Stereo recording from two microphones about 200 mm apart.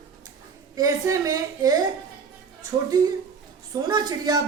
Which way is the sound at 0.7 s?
15° right (ahead or behind).